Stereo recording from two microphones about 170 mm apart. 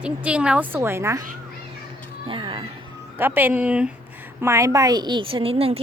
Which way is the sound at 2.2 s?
30° right (ahead or behind).